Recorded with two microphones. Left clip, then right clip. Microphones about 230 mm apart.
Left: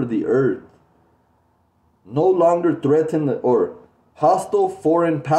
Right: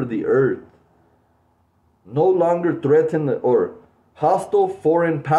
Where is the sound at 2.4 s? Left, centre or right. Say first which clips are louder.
Left 2 dB; centre.